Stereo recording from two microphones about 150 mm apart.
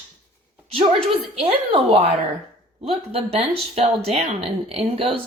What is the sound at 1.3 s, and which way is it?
Speech, 40° right (ahead or behind).